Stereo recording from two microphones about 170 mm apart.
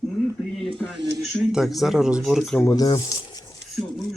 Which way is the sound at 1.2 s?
Centre (ahead or behind).